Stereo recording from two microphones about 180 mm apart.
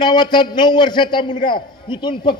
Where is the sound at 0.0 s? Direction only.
25° left (ahead or behind).